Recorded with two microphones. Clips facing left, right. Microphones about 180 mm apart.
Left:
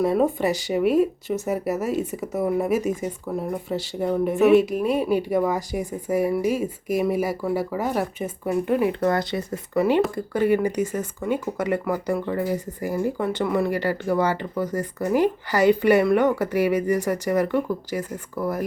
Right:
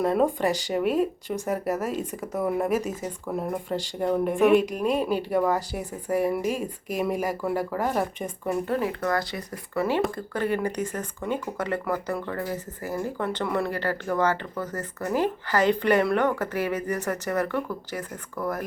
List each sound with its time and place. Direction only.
0.0 s speech: 5° left (ahead or behind)
8.9 s speech: 25° left (ahead or behind); by 18.6 s 10° left (ahead or behind)